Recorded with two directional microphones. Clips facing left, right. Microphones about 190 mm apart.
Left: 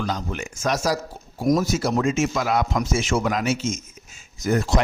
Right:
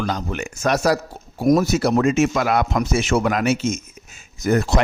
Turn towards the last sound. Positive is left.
turn(degrees=-60)  # may be behind; listen again after turning